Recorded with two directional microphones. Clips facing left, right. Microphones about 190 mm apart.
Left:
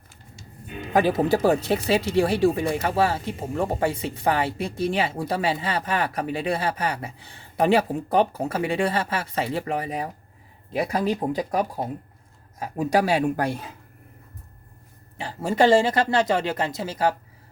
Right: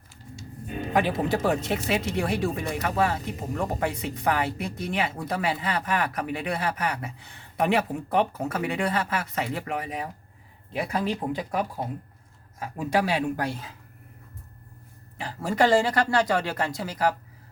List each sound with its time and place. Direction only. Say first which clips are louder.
0.7 s music: right 3 dB; 40° right (ahead or behind)
0.9 s speech: left 5 dB; 35° left (ahead or behind); by 13.7 s 55° left (ahead or behind)
15.2 s speech: left 3 dB; 25° left (ahead or behind)